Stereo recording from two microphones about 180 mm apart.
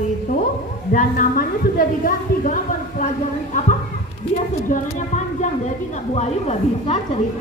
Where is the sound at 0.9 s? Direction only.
50° left (ahead or behind).